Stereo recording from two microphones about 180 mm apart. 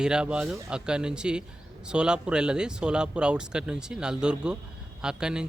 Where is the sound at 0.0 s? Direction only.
5° right (ahead or behind).